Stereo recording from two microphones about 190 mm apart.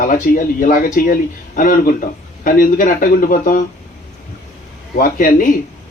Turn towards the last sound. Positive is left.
turn(degrees=45)  # may be behind; listen again after turning